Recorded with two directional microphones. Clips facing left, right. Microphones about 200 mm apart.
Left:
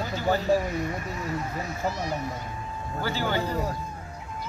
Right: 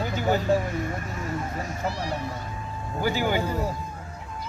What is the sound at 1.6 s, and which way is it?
Speech, 40° right (ahead or behind).